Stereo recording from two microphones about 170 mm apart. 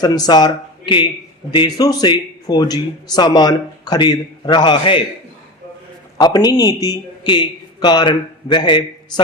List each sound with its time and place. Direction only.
0.0 s speech: 25° left (ahead or behind)
6.1 s a man's voice: 25° left (ahead or behind)